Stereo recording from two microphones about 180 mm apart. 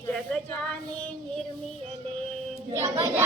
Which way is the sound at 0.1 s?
5° left (ahead or behind).